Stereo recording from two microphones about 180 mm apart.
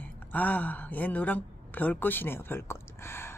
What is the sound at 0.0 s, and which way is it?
A woman's voice, 10° left (ahead or behind).